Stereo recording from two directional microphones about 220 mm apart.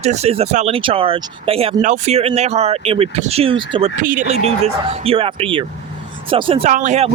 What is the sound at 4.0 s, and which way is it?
Speech, 35° right (ahead or behind).